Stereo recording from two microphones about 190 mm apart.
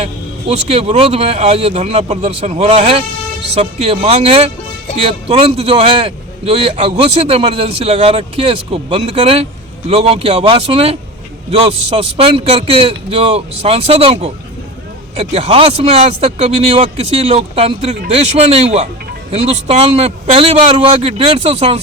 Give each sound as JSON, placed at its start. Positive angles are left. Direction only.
{"t": 0.0, "sound": "a man's voice", "side_deg": -30}